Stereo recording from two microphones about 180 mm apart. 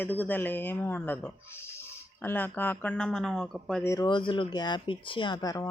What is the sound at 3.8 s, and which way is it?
Speech, 20° left (ahead or behind).